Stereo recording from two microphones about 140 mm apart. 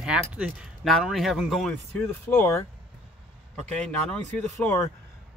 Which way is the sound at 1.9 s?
15° left (ahead or behind).